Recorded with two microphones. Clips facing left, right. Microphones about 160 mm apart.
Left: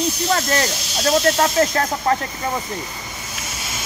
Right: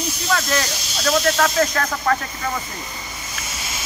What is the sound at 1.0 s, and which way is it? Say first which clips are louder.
Speech: left 2 dB; 30° left (ahead or behind).